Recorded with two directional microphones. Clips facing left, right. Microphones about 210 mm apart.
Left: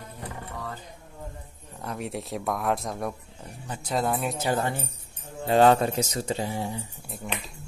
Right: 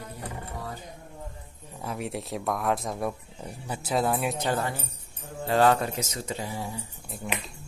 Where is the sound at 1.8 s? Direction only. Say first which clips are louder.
Even; centre (ahead or behind).